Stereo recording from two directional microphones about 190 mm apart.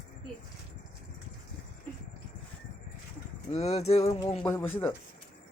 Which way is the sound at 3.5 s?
35° left (ahead or behind).